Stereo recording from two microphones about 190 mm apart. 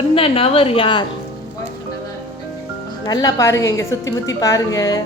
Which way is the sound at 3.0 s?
20° left (ahead or behind).